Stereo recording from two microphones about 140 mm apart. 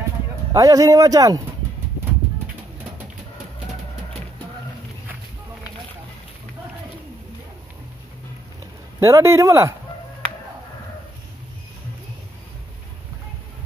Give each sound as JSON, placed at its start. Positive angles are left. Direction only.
{"t": 0.5, "sound": "speech", "side_deg": -25}
{"t": 9.0, "sound": "speech", "side_deg": -20}